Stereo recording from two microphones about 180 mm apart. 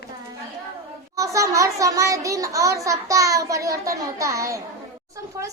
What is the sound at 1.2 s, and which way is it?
A child's voice, 15° right (ahead or behind).